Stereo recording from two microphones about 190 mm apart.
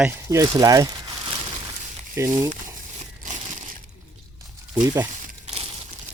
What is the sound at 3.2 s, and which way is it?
Crumpling, 40° right (ahead or behind).